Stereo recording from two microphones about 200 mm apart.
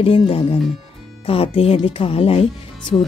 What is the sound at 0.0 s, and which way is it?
Speech, 30° left (ahead or behind).